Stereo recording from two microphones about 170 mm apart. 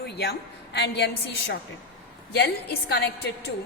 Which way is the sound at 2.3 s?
75° left (ahead or behind).